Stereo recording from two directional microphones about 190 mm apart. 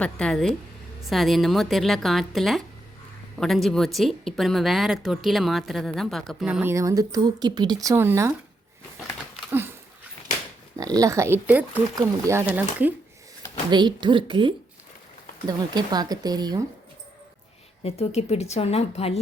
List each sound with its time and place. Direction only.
0.0 s a woman's voice: 5° left (ahead or behind); by 8.4 s 10° right (ahead or behind)
10.8 s speech: 20° right (ahead or behind)
13.7 s speech: 25° right (ahead or behind)
17.8 s a woman's voice: 35° left (ahead or behind)